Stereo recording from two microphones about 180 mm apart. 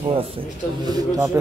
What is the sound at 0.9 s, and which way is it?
Speech, 20° right (ahead or behind).